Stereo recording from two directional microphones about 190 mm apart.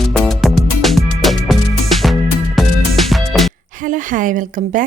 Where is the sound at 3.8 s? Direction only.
45° right (ahead or behind).